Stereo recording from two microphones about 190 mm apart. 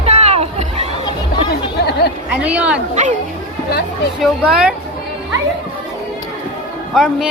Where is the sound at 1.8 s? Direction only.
60° left (ahead or behind).